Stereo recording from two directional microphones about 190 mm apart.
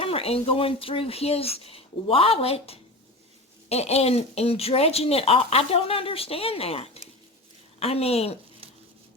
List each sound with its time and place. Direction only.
0.0 s speech: 30° left (ahead or behind)